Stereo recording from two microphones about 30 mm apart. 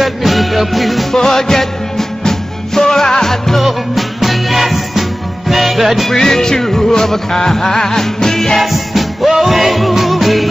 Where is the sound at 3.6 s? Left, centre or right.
Centre.